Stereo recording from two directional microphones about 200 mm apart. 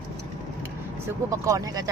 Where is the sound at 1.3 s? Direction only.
15° right (ahead or behind).